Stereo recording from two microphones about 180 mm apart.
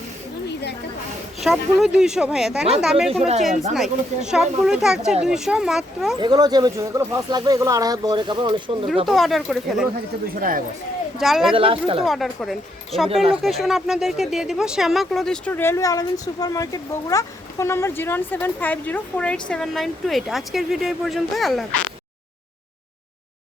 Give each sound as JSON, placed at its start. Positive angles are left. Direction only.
{"t": 1.4, "sound": "speech", "side_deg": 0}
{"t": 3.1, "sound": "speech", "side_deg": -35}
{"t": 3.8, "sound": "speech", "side_deg": -5}
{"t": 6.1, "sound": "speech", "side_deg": -25}
{"t": 9.0, "sound": "speech", "side_deg": 0}
{"t": 11.2, "sound": "speech", "side_deg": 0}
{"t": 11.5, "sound": "speech", "side_deg": -30}
{"t": 12.0, "sound": "speech", "side_deg": 0}